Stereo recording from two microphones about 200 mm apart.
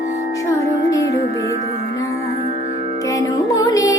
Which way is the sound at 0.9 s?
15° left (ahead or behind).